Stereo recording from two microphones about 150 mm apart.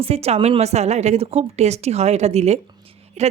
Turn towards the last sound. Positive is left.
turn(degrees=-45)  # may be behind; listen again after turning